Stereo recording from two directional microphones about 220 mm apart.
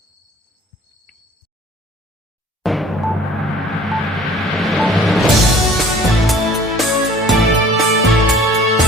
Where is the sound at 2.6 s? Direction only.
Centre (ahead or behind).